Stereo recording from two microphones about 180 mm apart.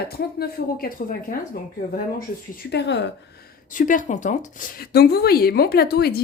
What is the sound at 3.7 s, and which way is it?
Speech, 45° left (ahead or behind).